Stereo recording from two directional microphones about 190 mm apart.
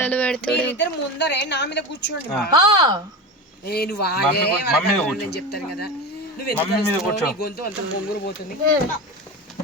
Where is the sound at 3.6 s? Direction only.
55° left (ahead or behind).